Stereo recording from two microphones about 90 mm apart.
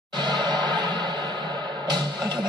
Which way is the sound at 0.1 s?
55° right (ahead or behind).